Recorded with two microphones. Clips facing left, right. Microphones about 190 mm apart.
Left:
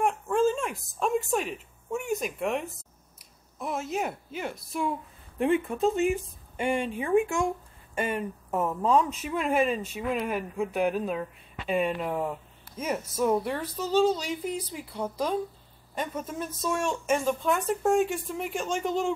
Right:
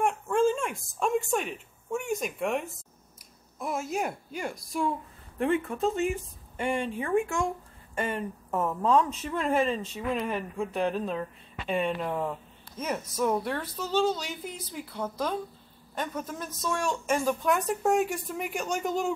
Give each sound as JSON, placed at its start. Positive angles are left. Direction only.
{"t": 0.0, "sound": "a woman's voice", "side_deg": 0}
{"t": 5.4, "sound": "a woman's voice", "side_deg": 20}